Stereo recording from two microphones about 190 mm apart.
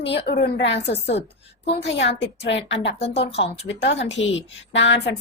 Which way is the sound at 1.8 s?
70° left (ahead or behind).